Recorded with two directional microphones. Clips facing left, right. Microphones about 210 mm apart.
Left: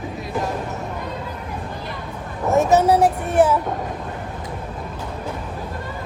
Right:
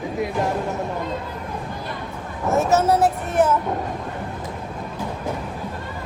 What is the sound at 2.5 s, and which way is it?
Speech, 15° left (ahead or behind).